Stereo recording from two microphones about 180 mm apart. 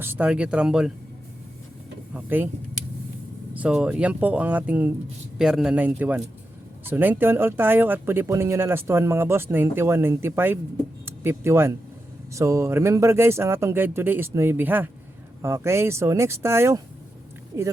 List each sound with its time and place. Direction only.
0.0 s speech: 10° right (ahead or behind)
2.1 s speech: 10° right (ahead or behind)
3.5 s a man's voice: 5° right (ahead or behind)